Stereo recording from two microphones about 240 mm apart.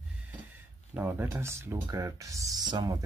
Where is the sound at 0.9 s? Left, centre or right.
Centre.